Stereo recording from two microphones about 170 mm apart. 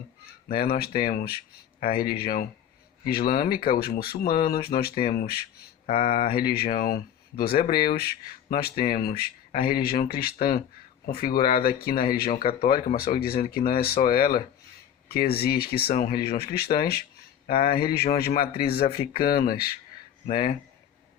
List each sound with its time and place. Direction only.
0.7 s speech: 60° left (ahead or behind)